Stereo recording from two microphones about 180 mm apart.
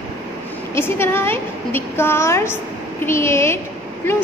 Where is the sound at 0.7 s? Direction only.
15° left (ahead or behind).